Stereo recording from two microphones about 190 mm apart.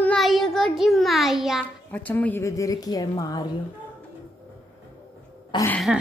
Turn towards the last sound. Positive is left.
turn(degrees=10)  # may be behind; listen again after turning